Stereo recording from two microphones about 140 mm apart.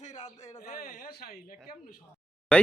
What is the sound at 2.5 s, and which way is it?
Speech, 5° left (ahead or behind).